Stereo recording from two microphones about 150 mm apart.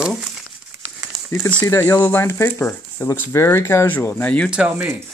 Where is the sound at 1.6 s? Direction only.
20° left (ahead or behind).